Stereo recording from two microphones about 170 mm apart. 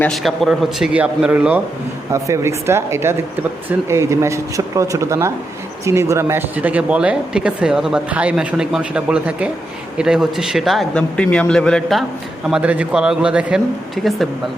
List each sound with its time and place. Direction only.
0.0 s a man's voice: centre (ahead or behind)